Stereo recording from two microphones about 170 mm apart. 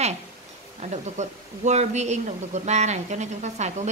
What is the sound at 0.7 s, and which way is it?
A woman's voice, 40° right (ahead or behind).